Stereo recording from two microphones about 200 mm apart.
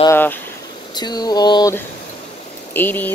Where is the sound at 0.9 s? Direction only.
20° left (ahead or behind).